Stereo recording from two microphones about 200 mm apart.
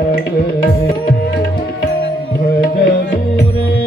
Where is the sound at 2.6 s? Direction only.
45° left (ahead or behind).